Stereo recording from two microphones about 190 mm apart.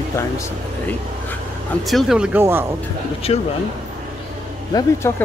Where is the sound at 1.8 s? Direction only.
Centre (ahead or behind).